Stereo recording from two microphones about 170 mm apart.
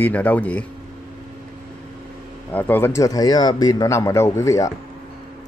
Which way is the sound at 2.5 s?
10° left (ahead or behind).